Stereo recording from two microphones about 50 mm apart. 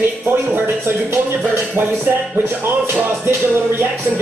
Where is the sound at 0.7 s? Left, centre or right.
Right.